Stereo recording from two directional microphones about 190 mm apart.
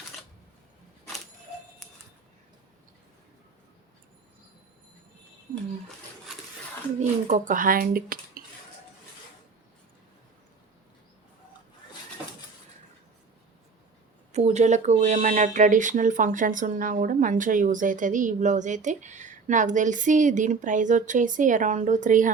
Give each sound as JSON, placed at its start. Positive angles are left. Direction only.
{"t": 7.3, "sound": "speech", "side_deg": -40}
{"t": 14.3, "sound": "speech", "side_deg": -35}